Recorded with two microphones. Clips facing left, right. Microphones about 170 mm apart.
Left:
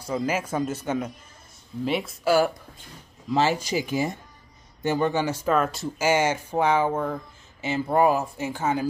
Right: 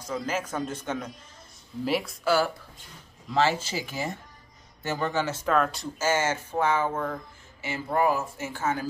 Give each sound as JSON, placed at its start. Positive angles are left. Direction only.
{"t": 0.0, "sound": "speech", "side_deg": 10}
{"t": 2.2, "sound": "speech", "side_deg": 10}
{"t": 5.9, "sound": "speech", "side_deg": 15}